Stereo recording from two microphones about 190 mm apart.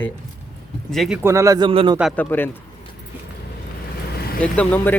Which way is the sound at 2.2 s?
10° left (ahead or behind).